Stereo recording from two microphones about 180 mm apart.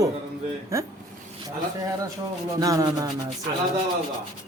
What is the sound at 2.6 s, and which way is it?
Speech, 20° right (ahead or behind).